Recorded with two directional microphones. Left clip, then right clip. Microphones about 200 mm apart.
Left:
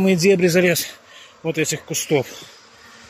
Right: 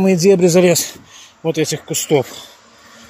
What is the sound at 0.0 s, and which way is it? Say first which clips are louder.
Speech: right 4 dB; 10° right (ahead or behind).